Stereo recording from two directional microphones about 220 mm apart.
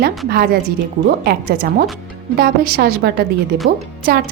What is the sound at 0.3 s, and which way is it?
A woman's voice, 45° right (ahead or behind).